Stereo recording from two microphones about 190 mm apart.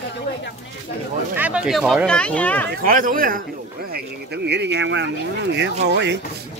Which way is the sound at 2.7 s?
45° right (ahead or behind).